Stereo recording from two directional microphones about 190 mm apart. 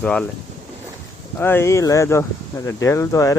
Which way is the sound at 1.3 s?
10° left (ahead or behind).